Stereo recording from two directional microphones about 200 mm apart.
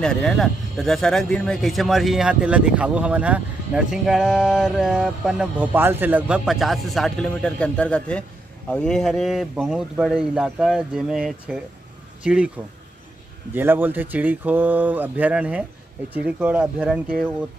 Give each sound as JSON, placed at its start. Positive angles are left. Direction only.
{"t": 0.0, "sound": "speech", "side_deg": 5}
{"t": 13.5, "sound": "speech", "side_deg": -10}